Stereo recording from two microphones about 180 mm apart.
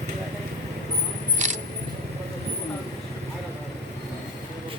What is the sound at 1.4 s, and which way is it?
Single-lens reflex camera, 40° right (ahead or behind).